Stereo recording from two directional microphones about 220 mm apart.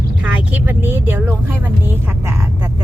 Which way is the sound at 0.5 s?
10° right (ahead or behind).